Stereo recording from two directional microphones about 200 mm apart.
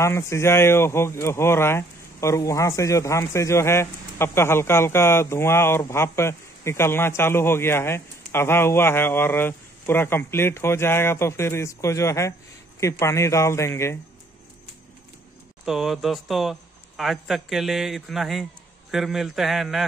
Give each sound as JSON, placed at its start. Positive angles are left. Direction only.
{"t": 0.0, "sound": "speech", "side_deg": 15}
{"t": 15.6, "sound": "speech", "side_deg": 0}